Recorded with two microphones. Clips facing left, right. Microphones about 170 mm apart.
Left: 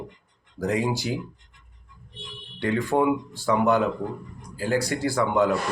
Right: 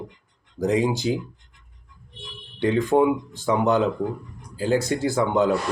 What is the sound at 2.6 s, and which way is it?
A man's voice, 20° right (ahead or behind).